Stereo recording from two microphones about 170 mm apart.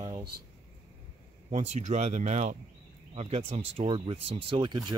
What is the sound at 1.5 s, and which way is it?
Speech, 40° right (ahead or behind).